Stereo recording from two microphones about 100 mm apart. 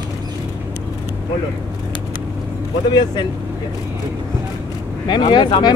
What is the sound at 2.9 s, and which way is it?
Speech, 45° left (ahead or behind).